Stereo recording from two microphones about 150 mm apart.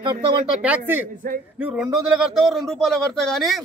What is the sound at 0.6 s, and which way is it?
A man's voice, 10° right (ahead or behind).